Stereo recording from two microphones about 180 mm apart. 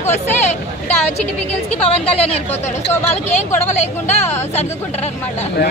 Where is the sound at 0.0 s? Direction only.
40° left (ahead or behind).